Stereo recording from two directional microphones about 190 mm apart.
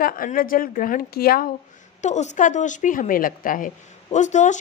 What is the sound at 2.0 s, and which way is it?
A woman's voice, 40° left (ahead or behind).